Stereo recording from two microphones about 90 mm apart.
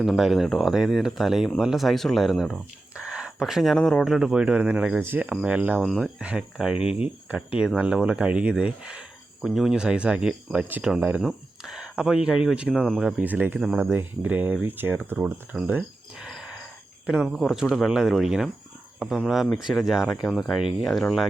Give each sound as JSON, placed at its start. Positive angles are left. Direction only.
{"t": 0.0, "sound": "speech", "side_deg": 0}
{"t": 4.0, "sound": "speech", "side_deg": -5}
{"t": 4.9, "sound": "speech", "side_deg": -20}
{"t": 5.3, "sound": "speech", "side_deg": -5}
{"t": 5.5, "sound": "speech", "side_deg": -15}
{"t": 5.8, "sound": "speech", "side_deg": -5}
{"t": 11.2, "sound": "speech", "side_deg": -5}
{"t": 13.1, "sound": "speech", "side_deg": -20}
{"t": 15.5, "sound": "speech", "side_deg": -5}
{"t": 16.2, "sound": "a sound", "side_deg": -5}
{"t": 17.1, "sound": "speech", "side_deg": -5}